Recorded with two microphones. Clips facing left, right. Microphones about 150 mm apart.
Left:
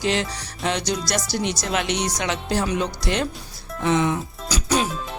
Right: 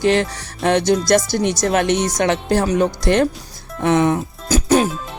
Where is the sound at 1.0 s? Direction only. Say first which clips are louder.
Right 9 dB; 50° right (ahead or behind).